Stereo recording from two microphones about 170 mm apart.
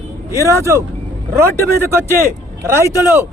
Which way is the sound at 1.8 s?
15° right (ahead or behind).